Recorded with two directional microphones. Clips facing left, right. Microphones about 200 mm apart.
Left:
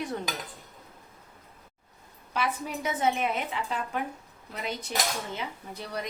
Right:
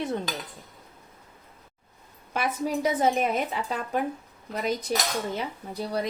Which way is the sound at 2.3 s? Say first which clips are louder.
Right 3 dB; 50° right (ahead or behind).